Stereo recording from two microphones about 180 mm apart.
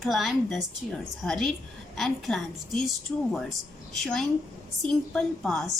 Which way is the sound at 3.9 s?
Centre (ahead or behind).